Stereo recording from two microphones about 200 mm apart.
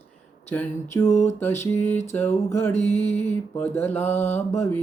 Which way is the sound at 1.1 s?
35° left (ahead or behind).